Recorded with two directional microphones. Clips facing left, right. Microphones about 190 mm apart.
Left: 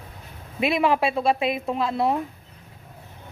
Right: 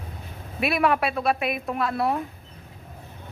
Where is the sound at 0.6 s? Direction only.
25° left (ahead or behind).